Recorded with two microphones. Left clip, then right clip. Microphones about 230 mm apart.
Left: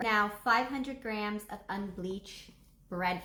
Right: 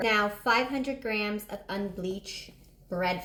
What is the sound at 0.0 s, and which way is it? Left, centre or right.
Speech, centre.